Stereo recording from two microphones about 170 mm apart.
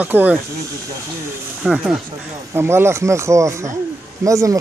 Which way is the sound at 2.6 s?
15° right (ahead or behind).